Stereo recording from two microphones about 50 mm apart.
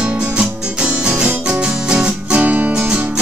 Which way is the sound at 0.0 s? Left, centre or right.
Centre.